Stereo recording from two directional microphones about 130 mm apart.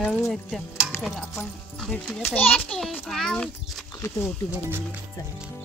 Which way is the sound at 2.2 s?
15° left (ahead or behind).